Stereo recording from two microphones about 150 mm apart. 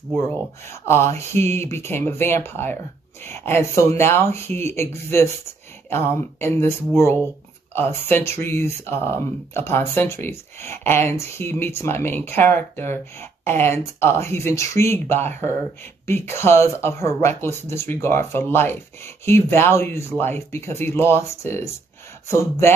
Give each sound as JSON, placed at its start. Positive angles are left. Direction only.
{"t": 0.2, "sound": "speech", "side_deg": 15}
{"t": 7.7, "sound": "speech", "side_deg": 15}